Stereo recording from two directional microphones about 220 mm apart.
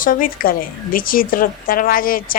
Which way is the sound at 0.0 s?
40° left (ahead or behind).